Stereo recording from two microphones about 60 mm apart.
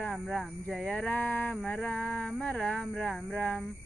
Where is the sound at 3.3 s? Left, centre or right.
Left.